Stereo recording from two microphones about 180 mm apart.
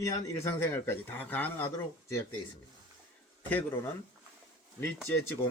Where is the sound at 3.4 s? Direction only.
10° left (ahead or behind).